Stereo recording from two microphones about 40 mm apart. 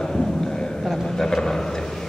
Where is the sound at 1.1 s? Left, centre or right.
Centre.